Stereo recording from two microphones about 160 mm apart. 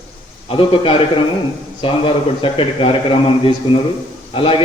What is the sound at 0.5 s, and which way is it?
A man's voice, 35° left (ahead or behind).